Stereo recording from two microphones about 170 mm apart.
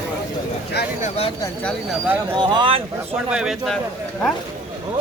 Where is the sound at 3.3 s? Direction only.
5° right (ahead or behind).